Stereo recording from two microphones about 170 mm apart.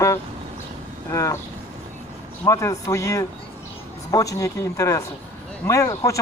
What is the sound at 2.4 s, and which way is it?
Speech, 15° left (ahead or behind).